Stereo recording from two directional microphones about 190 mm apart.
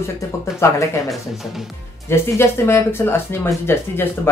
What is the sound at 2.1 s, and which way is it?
Speech, 15° left (ahead or behind).